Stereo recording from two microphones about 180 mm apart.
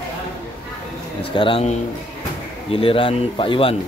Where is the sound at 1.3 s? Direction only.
30° left (ahead or behind).